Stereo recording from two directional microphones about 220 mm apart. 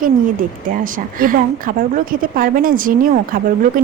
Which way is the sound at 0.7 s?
40° right (ahead or behind).